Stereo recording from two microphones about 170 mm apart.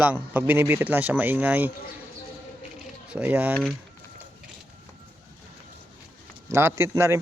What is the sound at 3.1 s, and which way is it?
Speech, 10° right (ahead or behind).